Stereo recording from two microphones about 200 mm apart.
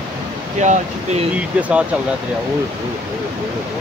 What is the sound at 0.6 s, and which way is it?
Speech, 35° right (ahead or behind).